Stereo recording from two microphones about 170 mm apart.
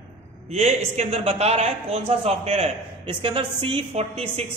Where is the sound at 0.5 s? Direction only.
40° right (ahead or behind).